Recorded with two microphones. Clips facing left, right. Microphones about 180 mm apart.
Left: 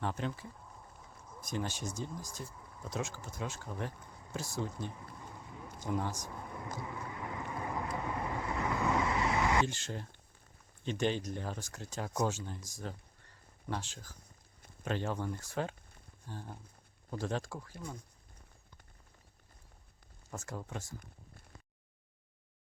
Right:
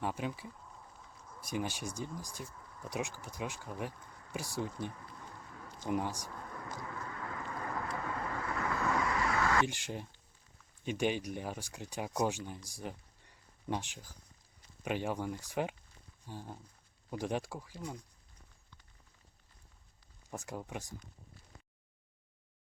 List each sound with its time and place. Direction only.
0.0 s speech: 10° right (ahead or behind)
2.5 s a sound: 10° left (ahead or behind)
2.8 s speech: 15° right (ahead or behind)
4.9 s a sound: 15° left (ahead or behind)
5.9 s speech: 15° right (ahead or behind)
6.2 s vehicle: 15° left (ahead or behind)
9.6 s speech: 15° right (ahead or behind)
12.6 s a sound: 15° right (ahead or behind)
14.8 s speech: 15° right (ahead or behind)
20.3 s speech: 15° right (ahead or behind)